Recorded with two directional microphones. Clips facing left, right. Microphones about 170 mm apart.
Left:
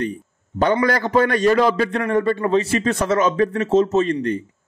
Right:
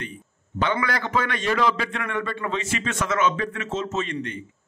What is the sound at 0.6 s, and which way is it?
A man's voice, 40° left (ahead or behind).